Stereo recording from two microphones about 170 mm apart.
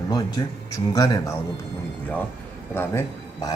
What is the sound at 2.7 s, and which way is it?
Speech, 15° left (ahead or behind).